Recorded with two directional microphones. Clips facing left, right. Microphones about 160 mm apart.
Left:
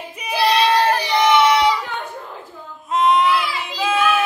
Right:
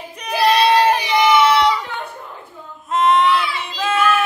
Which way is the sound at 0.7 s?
15° right (ahead or behind).